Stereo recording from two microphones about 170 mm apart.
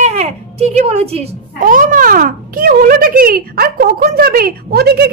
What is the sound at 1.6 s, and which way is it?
A woman's voice, 55° right (ahead or behind).